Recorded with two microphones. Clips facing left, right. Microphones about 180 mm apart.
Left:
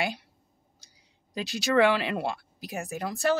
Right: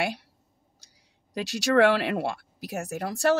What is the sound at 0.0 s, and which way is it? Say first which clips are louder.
Speech: right 2 dB; 65° right (ahead or behind).